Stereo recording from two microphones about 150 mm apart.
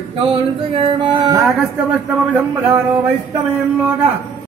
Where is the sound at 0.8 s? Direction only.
30° right (ahead or behind).